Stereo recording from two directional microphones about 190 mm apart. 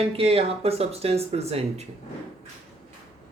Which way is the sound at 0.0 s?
30° right (ahead or behind).